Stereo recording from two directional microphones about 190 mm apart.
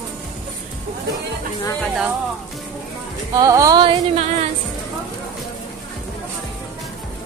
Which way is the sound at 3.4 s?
20° right (ahead or behind).